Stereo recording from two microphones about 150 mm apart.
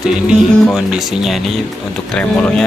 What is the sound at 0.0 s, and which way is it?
Speech, 5° right (ahead or behind).